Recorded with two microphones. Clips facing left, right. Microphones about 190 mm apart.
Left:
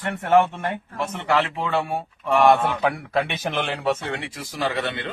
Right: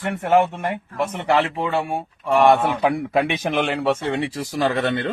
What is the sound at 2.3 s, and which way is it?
Speech, centre (ahead or behind).